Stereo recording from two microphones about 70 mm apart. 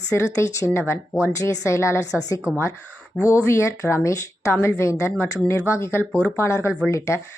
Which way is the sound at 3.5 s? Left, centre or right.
Left.